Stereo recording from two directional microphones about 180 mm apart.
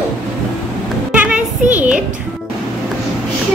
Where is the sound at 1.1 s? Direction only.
10° right (ahead or behind).